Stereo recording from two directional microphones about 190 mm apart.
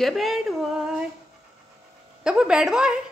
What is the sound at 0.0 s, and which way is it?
A woman's voice, centre (ahead or behind).